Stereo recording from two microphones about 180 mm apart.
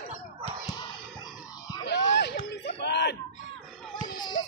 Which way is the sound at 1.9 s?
70° left (ahead or behind).